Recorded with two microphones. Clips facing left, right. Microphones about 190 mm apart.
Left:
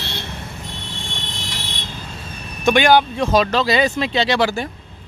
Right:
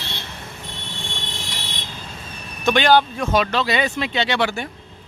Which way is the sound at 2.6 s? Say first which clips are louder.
Left 2 dB; 10° left (ahead or behind).